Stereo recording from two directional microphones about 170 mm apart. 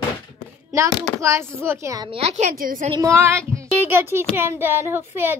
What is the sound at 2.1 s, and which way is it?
Speech, 40° right (ahead or behind).